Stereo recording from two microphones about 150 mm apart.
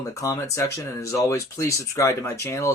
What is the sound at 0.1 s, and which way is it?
Speech, 20° left (ahead or behind).